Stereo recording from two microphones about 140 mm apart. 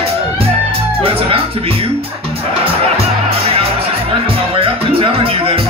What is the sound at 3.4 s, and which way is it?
Music, 45° right (ahead or behind).